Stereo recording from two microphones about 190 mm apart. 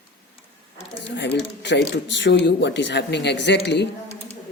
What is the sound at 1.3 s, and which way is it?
Speech, 65° left (ahead or behind).